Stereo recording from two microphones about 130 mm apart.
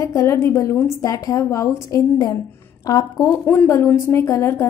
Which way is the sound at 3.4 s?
20° left (ahead or behind).